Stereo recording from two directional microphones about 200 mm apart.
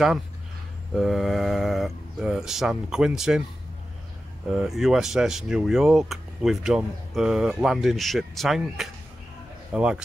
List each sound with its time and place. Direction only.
0.9 s speech: centre (ahead or behind)
4.5 s a man's voice: centre (ahead or behind)